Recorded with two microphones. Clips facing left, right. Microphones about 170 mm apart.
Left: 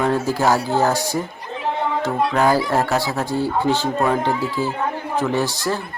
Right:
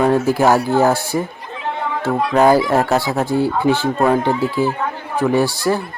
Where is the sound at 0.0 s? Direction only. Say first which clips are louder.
Right 5 dB; 15° right (ahead or behind).